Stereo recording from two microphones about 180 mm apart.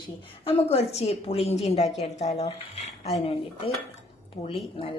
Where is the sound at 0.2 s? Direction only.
30° left (ahead or behind).